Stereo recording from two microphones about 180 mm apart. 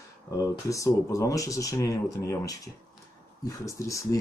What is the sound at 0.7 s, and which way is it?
Speech, 15° left (ahead or behind).